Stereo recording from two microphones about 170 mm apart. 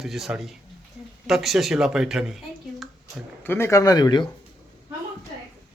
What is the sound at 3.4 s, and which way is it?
Speech, 15° left (ahead or behind).